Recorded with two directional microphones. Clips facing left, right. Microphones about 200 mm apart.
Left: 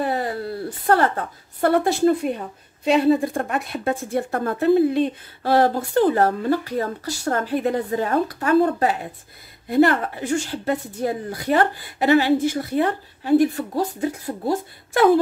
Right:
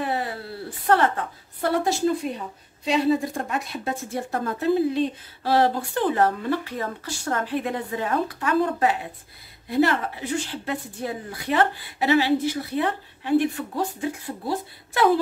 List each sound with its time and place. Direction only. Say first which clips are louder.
0.0 s a sound: left 3 dB; 40° left (ahead or behind)
0.8 s a woman's voice: left 2 dB; 40° left (ahead or behind)
1.7 s a woman's voice: left 4 dB; 55° left (ahead or behind); by 8.9 s 40° left (ahead or behind)
9.7 s a woman's voice: left 4 dB; 55° left (ahead or behind)